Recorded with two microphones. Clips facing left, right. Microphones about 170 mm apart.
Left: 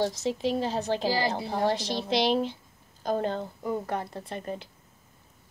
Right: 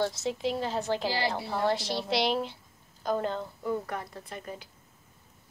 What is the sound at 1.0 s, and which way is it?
Speech, 40° left (ahead or behind).